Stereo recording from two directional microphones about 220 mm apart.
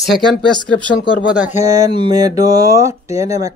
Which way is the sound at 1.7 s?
20° right (ahead or behind).